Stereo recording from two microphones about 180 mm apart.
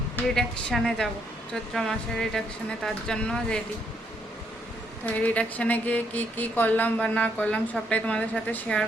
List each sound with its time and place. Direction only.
0.3 s speech: 5° left (ahead or behind)
5.0 s speech: 10° left (ahead or behind)